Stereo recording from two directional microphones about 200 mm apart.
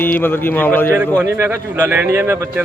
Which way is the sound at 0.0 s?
10° left (ahead or behind).